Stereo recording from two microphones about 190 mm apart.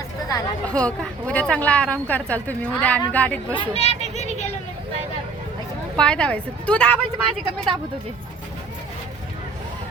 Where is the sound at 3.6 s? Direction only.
35° left (ahead or behind).